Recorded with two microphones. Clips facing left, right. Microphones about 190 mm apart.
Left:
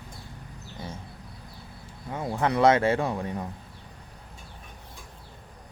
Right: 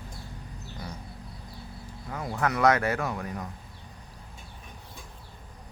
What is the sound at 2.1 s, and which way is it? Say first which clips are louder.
Speech: left 3 dB; 25° left (ahead or behind).